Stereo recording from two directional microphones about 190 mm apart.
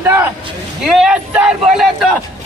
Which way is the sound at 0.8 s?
Centre (ahead or behind).